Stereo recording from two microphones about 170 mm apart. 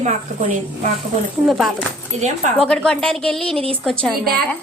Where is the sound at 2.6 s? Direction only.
5° left (ahead or behind).